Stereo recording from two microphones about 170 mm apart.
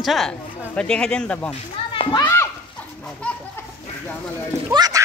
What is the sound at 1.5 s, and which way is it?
Speech, 30° left (ahead or behind).